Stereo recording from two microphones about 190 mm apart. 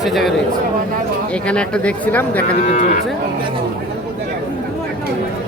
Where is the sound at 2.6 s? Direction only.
40° left (ahead or behind).